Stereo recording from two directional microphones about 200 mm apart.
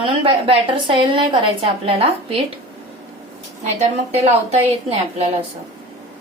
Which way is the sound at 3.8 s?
35° right (ahead or behind).